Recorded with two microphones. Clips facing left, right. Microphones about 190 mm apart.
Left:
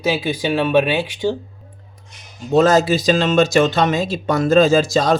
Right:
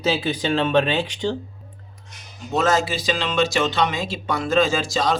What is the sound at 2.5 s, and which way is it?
Speech, 35° left (ahead or behind).